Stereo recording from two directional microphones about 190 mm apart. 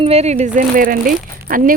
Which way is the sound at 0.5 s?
45° right (ahead or behind).